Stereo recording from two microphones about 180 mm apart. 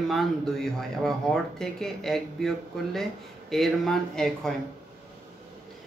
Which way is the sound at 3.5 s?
Centre (ahead or behind).